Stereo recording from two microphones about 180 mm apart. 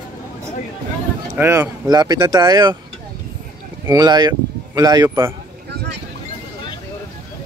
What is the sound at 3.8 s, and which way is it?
A man's voice, 20° right (ahead or behind).